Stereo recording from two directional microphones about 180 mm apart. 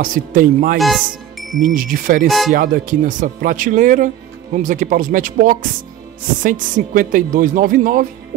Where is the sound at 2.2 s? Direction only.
Centre (ahead or behind).